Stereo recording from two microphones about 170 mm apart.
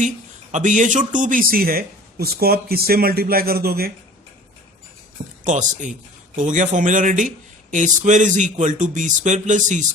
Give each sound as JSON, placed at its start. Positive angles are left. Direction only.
{"t": 0.5, "sound": "speech", "side_deg": -50}
{"t": 5.5, "sound": "a man's voice", "side_deg": -45}